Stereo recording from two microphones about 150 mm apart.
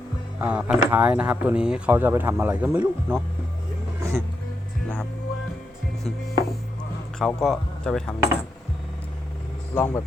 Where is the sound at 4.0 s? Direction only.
20° right (ahead or behind).